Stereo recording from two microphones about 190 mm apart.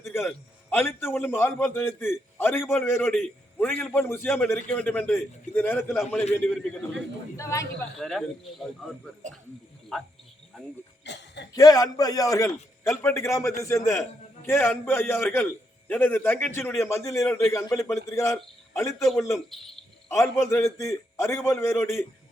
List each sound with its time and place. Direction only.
0.0 s a man's voice: 10° left (ahead or behind)
7.3 s a man's voice: 15° left (ahead or behind)
7.9 s speech: centre (ahead or behind)
9.2 s speech: 40° right (ahead or behind)
11.0 s a sound: 65° left (ahead or behind)
11.5 s a man's voice: 20° left (ahead or behind)